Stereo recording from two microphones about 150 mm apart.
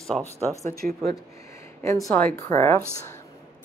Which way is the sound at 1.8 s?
20° left (ahead or behind).